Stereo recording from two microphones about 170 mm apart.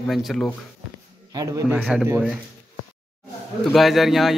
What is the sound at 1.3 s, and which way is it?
Speech, 20° right (ahead or behind).